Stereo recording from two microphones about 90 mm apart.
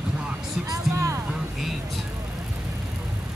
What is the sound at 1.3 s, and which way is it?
Vehicle, 5° right (ahead or behind).